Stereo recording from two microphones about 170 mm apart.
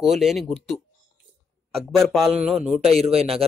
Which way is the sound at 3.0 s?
35° right (ahead or behind).